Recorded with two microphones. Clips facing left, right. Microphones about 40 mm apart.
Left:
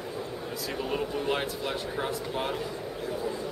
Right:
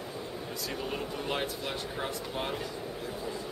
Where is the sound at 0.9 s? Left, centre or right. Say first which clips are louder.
Left 7 dB; centre.